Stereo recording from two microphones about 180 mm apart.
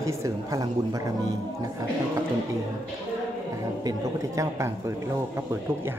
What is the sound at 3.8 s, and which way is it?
A man's voice, 20° right (ahead or behind).